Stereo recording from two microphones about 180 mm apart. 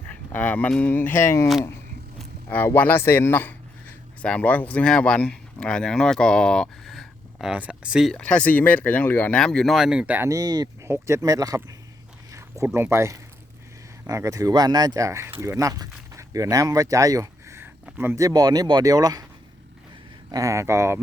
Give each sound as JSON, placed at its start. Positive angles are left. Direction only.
{"t": 0.1, "sound": "speech", "side_deg": 10}
{"t": 20.3, "sound": "speech", "side_deg": -15}